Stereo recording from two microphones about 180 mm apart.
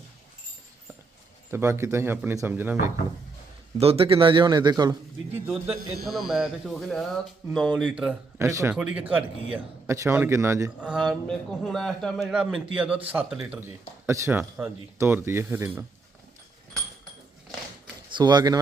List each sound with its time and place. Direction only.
1.5 s speech: 15° right (ahead or behind)
3.8 s speech: 30° right (ahead or behind)
5.5 s a man's voice: centre (ahead or behind)
8.4 s speech: 15° right (ahead or behind)
8.7 s speech: 5° right (ahead or behind)
10.9 s a man's voice: centre (ahead or behind)
18.1 s speech: 25° right (ahead or behind)